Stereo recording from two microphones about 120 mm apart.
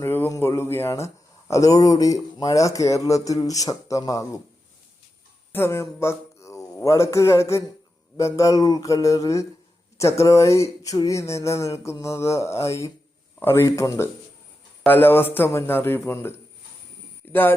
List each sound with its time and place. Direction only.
0.0 s speech: 20° left (ahead or behind)
5.5 s speech: 20° left (ahead or behind)